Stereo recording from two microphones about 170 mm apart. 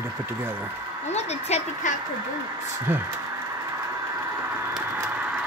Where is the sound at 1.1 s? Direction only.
40° left (ahead or behind).